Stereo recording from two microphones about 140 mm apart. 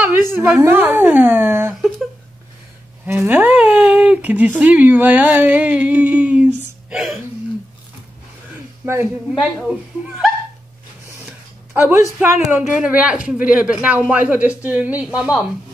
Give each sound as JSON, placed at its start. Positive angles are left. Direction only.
{"t": 0.3, "sound": "speech", "side_deg": -15}
{"t": 3.1, "sound": "speech", "side_deg": -15}
{"t": 8.8, "sound": "speech", "side_deg": -20}
{"t": 9.4, "sound": "speech", "side_deg": -5}
{"t": 11.7, "sound": "speech", "side_deg": -15}